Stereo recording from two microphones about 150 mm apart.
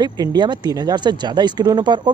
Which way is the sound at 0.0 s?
30° right (ahead or behind).